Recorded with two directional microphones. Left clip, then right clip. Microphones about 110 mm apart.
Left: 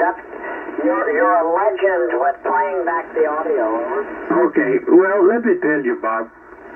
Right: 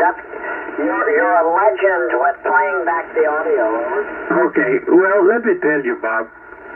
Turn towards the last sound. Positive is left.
turn(degrees=40)  # may be behind; listen again after turning